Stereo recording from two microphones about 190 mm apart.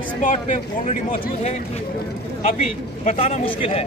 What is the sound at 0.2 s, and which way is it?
Speech, 45° left (ahead or behind).